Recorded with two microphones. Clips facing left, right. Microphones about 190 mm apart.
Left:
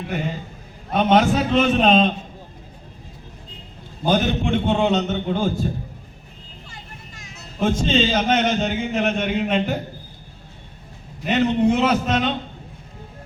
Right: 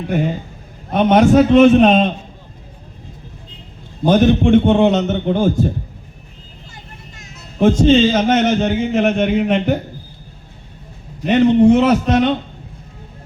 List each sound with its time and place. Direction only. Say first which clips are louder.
0.9 s a man's voice: right 6 dB; 55° right (ahead or behind)
4.0 s a man's voice: right 8 dB; 50° right (ahead or behind)
7.6 s a man's voice: right 8 dB; 50° right (ahead or behind)
11.3 s a man's voice: right 8 dB; 55° right (ahead or behind)